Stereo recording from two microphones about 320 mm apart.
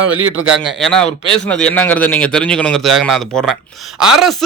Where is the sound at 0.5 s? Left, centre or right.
Centre.